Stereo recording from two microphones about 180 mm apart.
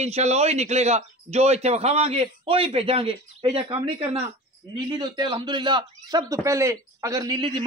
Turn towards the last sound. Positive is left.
turn(degrees=-25)  # may be behind; listen again after turning